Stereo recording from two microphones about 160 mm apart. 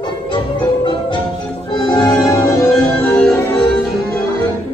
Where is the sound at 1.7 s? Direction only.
25° left (ahead or behind).